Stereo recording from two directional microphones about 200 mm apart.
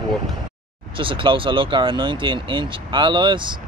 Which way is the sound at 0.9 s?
25° right (ahead or behind).